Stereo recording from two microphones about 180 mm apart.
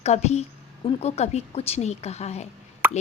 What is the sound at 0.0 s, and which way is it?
A woman's voice, 40° left (ahead or behind).